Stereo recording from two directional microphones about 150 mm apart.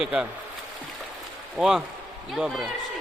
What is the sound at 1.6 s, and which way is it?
Speech, 5° right (ahead or behind).